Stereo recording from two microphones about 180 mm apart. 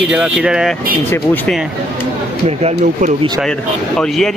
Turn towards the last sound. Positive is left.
turn(degrees=5)  # may be behind; listen again after turning